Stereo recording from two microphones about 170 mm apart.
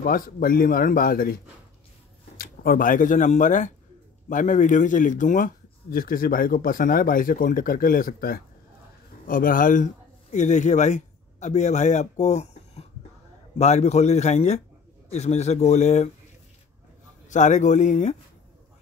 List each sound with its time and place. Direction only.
0.0 s a man's voice: 60° left (ahead or behind)
2.3 s a man's voice: 60° left (ahead or behind); by 16.1 s 40° left (ahead or behind)
17.3 s speech: 45° left (ahead or behind)